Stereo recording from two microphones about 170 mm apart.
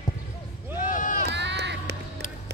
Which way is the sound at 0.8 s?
50° left (ahead or behind).